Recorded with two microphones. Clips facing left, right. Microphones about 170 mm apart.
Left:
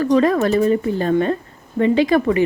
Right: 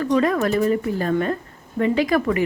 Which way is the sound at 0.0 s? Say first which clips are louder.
Left 4 dB; 35° left (ahead or behind).